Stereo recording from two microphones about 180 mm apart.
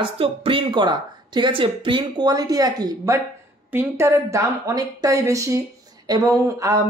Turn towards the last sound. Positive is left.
turn(degrees=-15)  # may be behind; listen again after turning